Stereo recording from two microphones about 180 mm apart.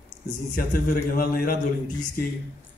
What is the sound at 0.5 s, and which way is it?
A man's voice, 50° left (ahead or behind).